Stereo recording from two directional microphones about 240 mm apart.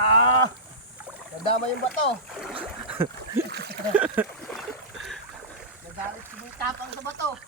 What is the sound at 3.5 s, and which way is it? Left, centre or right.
Speech, right.